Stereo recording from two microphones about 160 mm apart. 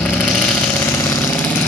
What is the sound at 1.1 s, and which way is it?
Engine, 15° left (ahead or behind).